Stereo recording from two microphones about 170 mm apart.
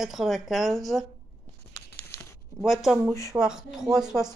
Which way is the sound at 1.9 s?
15° left (ahead or behind).